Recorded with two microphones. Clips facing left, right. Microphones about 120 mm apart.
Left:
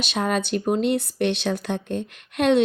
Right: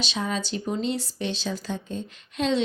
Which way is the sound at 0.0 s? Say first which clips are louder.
Left 5 dB; 55° left (ahead or behind).